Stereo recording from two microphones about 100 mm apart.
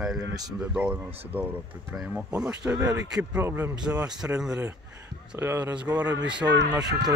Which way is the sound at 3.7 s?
10° right (ahead or behind).